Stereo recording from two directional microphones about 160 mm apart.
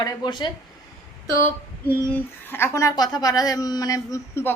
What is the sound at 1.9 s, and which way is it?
A woman's voice, 15° left (ahead or behind).